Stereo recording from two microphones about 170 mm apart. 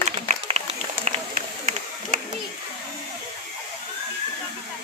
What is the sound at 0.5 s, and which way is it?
Run, 40° right (ahead or behind).